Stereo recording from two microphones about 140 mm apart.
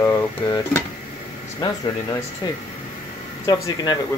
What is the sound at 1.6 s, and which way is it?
Speech, 30° left (ahead or behind).